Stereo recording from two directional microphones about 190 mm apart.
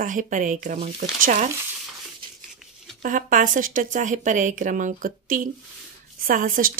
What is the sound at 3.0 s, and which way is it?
A woman's voice, 45° right (ahead or behind).